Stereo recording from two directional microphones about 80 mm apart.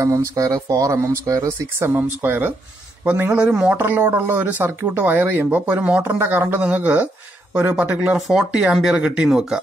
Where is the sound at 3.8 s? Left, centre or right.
Right.